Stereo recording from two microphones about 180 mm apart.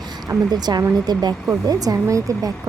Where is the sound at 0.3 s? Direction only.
20° right (ahead or behind).